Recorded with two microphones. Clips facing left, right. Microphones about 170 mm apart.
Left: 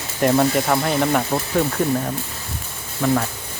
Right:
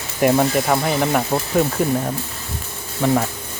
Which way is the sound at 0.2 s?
5° right (ahead or behind).